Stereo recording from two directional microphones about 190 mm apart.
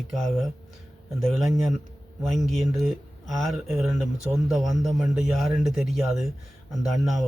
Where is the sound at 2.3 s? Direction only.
Centre (ahead or behind).